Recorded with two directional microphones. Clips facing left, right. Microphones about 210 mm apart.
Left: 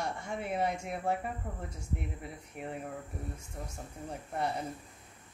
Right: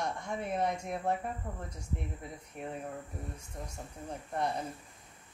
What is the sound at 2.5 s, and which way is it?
Speech, 5° left (ahead or behind).